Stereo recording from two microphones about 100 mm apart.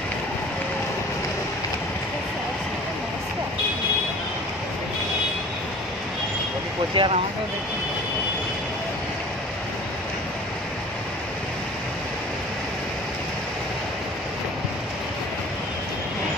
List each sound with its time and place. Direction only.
7.0 s speech: 65° right (ahead or behind)